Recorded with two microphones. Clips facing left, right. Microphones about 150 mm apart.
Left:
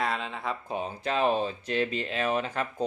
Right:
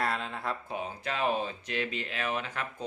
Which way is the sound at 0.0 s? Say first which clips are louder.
Left 2 dB; centre (ahead or behind).